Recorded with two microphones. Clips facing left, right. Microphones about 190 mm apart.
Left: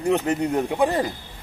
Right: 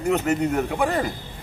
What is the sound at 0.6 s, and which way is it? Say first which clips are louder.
Speech: left 2 dB; 20° left (ahead or behind).